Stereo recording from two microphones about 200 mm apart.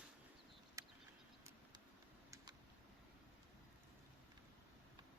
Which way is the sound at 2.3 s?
20° right (ahead or behind).